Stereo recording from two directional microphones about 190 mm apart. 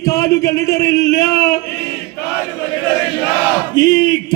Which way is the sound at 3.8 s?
75° left (ahead or behind).